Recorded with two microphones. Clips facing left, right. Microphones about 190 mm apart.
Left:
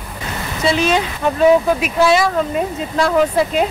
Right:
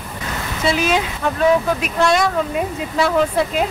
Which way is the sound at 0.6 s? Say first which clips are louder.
Left 2 dB; 5° right (ahead or behind).